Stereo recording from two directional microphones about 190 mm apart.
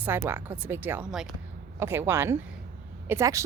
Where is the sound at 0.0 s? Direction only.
10° right (ahead or behind).